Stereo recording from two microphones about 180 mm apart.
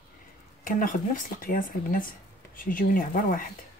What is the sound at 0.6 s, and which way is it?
Speech, 50° left (ahead or behind).